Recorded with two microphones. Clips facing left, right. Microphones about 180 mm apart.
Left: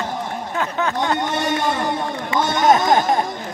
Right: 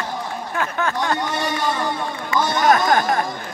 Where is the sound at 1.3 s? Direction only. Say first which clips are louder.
Left 3 dB; 55° left (ahead or behind).